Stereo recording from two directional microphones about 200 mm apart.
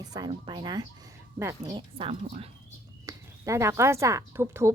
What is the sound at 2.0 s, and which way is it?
Speech, 30° right (ahead or behind).